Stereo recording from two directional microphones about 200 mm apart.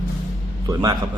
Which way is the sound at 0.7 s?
20° right (ahead or behind).